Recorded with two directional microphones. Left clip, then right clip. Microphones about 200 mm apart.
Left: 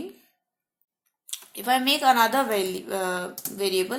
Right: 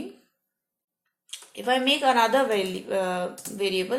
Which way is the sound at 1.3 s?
35° left (ahead or behind).